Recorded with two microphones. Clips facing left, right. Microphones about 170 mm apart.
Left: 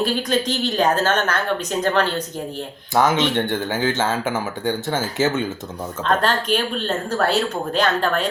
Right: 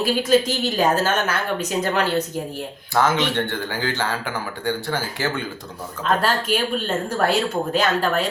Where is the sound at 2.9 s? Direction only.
20° left (ahead or behind).